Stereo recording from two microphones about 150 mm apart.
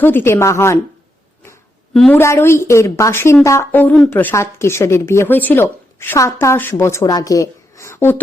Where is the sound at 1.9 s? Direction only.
5° left (ahead or behind).